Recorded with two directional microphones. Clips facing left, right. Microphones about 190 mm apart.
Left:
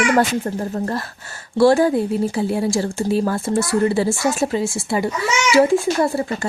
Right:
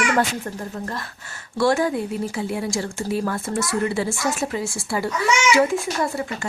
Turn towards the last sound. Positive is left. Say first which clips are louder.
# left 5 dB
turn(degrees=35)  # may be behind; listen again after turning